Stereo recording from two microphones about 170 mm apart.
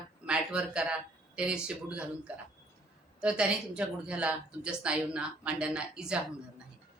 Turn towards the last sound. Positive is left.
turn(degrees=-5)  # may be behind; listen again after turning